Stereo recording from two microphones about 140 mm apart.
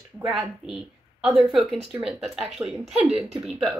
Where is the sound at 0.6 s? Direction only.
5° right (ahead or behind).